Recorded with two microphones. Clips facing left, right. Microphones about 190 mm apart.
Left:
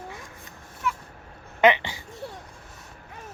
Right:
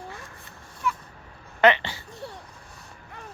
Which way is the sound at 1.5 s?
15° left (ahead or behind).